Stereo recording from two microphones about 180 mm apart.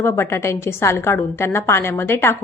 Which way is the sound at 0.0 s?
15° left (ahead or behind).